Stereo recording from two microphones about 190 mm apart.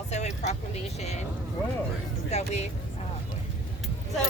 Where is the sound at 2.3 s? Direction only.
35° left (ahead or behind).